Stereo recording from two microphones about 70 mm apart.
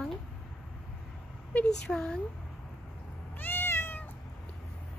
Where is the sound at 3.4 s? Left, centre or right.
Left.